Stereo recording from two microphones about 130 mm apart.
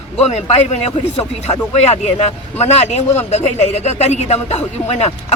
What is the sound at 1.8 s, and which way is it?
A man's voice, 55° left (ahead or behind).